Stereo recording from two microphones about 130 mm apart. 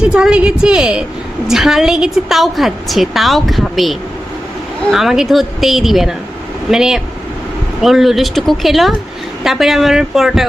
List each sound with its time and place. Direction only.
0.0 s a woman's voice: 5° right (ahead or behind)